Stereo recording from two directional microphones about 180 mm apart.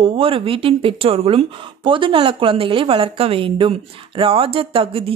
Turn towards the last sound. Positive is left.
turn(degrees=-30)  # may be behind; listen again after turning